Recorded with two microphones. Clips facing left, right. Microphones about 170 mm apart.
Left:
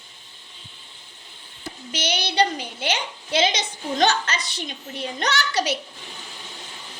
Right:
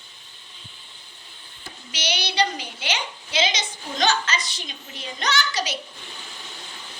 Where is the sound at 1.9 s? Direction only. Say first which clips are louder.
Left 2 dB; 50° left (ahead or behind).